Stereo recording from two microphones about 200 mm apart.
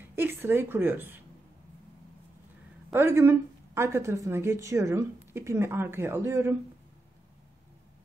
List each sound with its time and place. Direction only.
0.1 s a woman's voice: 10° right (ahead or behind)
2.9 s a woman's voice: 10° right (ahead or behind)